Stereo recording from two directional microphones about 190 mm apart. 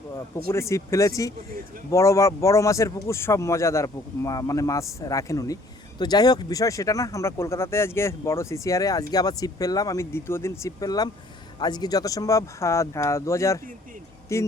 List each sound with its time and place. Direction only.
0.5 s speech: 15° left (ahead or behind)